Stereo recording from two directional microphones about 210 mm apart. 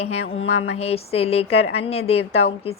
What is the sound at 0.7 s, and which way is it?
A woman's voice, 30° left (ahead or behind).